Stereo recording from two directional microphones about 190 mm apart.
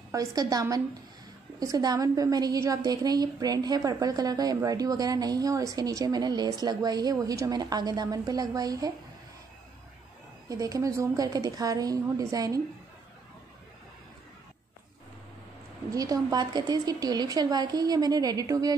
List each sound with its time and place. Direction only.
0.1 s a woman's voice: 20° right (ahead or behind)
10.5 s a woman's voice: 20° right (ahead or behind)
15.9 s a woman's voice: 20° right (ahead or behind)